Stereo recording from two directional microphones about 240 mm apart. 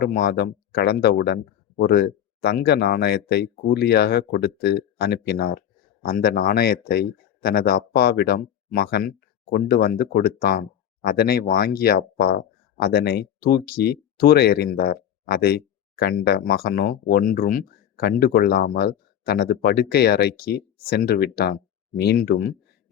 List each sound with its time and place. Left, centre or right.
0.1 s speech: left